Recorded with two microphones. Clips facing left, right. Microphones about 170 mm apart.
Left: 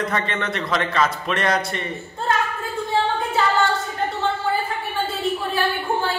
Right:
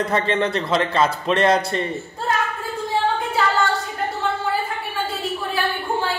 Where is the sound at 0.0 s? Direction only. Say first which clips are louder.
Right 4 dB; 30° right (ahead or behind).